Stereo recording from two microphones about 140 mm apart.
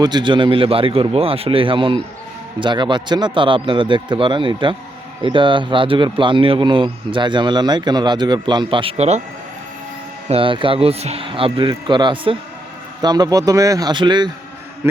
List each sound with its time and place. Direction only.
0.0 s speech: 30° right (ahead or behind); by 9.2 s 50° right (ahead or behind)
10.2 s speech: 40° right (ahead or behind)